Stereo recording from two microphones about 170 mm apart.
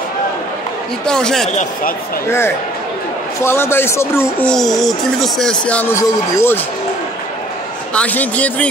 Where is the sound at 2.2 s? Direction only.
15° left (ahead or behind).